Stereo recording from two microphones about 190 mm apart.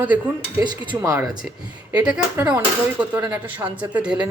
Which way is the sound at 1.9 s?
5° right (ahead or behind).